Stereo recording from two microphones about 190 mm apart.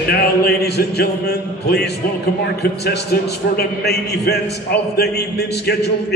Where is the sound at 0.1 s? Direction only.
55° left (ahead or behind).